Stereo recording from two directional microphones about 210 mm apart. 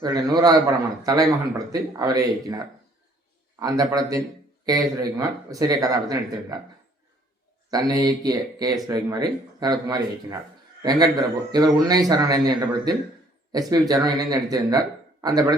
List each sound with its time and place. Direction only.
0.0 s a man's voice: 20° right (ahead or behind)
3.6 s a man's voice: 15° right (ahead or behind)
7.7 s speech: 20° right (ahead or behind)
11.5 s a man's voice: 20° right (ahead or behind)